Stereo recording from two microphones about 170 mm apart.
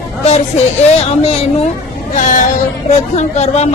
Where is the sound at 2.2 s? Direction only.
50° left (ahead or behind).